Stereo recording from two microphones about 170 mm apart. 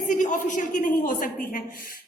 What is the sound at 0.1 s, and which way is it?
A man's voice, 50° left (ahead or behind).